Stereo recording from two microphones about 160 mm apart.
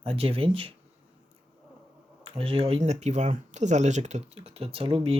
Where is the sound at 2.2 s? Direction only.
35° right (ahead or behind).